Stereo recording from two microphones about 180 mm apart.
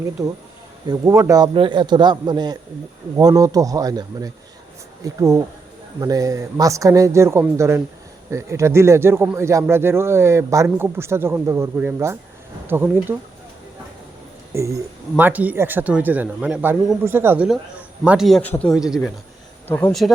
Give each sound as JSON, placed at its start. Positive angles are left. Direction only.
{"t": 0.9, "sound": "a man's voice", "side_deg": -15}
{"t": 14.5, "sound": "speech", "side_deg": -15}
{"t": 19.6, "sound": "speech", "side_deg": 10}